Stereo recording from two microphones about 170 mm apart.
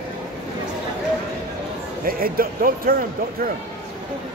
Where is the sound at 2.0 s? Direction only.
55° right (ahead or behind).